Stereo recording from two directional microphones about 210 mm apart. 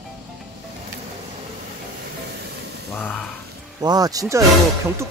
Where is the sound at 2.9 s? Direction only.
5° left (ahead or behind).